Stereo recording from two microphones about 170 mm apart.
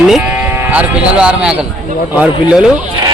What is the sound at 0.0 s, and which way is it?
Sheep, 5° right (ahead or behind).